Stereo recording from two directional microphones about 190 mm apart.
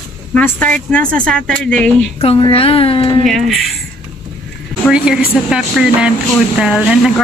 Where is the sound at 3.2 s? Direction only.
Centre (ahead or behind).